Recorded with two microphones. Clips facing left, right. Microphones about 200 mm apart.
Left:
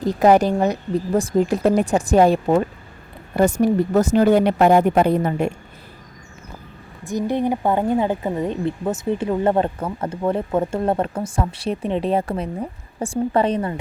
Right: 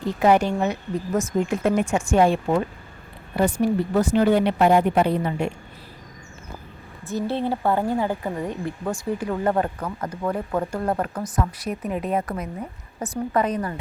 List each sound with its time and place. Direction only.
0.0 s speech: 40° left (ahead or behind)
7.0 s a woman's voice: 15° left (ahead or behind)